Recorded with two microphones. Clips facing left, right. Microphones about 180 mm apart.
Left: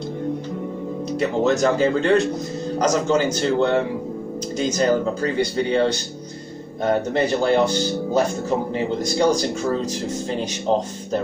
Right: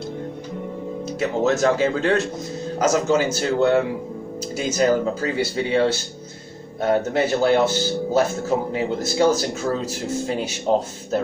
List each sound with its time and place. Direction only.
1.2 s a man's voice: centre (ahead or behind)